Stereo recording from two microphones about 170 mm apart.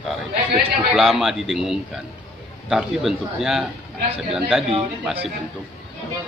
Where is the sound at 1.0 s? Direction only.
Centre (ahead or behind).